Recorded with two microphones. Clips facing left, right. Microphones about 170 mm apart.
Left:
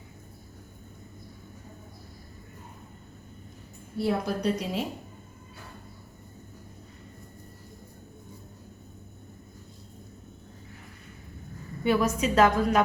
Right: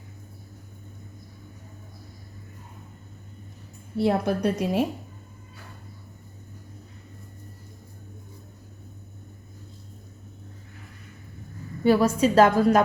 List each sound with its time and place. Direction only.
3.9 s a woman's voice: 60° right (ahead or behind)
11.8 s a woman's voice: 35° right (ahead or behind)